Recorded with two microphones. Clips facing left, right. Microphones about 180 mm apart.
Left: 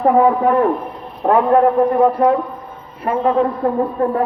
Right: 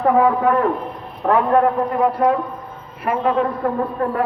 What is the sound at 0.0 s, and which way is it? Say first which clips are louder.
A woman's voice: left 2 dB; 30° left (ahead or behind).